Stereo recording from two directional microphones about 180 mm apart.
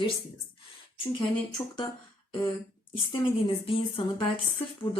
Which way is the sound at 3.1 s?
30° left (ahead or behind).